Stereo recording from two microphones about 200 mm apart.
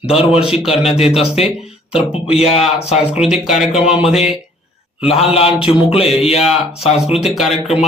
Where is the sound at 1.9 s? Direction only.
30° left (ahead or behind).